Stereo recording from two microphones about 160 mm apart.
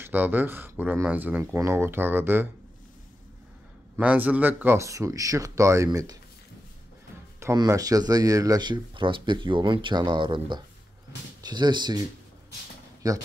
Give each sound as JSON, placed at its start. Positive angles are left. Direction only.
{"t": 0.0, "sound": "speech", "side_deg": -10}
{"t": 3.9, "sound": "speech", "side_deg": -10}
{"t": 7.3, "sound": "speech", "side_deg": -20}